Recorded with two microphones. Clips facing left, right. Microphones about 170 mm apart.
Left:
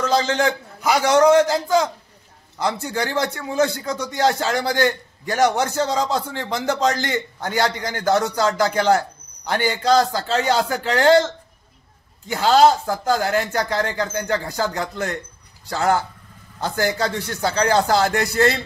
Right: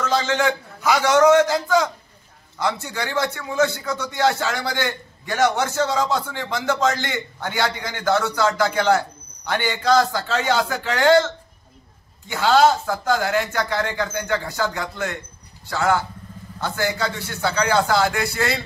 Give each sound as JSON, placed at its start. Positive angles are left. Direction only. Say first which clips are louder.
{"t": 0.0, "sound": "a man's voice", "louder": "left 1 dB", "side_deg": 35}
{"t": 12.4, "sound": "a man's voice", "louder": "left 2 dB", "side_deg": 35}